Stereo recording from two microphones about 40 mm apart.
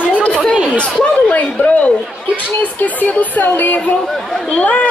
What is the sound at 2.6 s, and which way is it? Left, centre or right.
A woman's voice, left.